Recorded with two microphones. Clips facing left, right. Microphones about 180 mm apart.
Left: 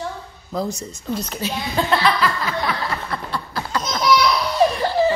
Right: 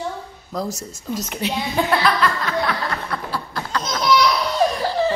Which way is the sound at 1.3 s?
15° right (ahead or behind).